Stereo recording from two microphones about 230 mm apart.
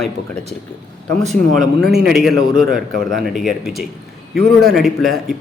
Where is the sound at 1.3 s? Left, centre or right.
Centre.